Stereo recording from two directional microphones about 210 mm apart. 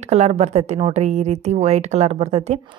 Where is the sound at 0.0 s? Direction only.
30° right (ahead or behind).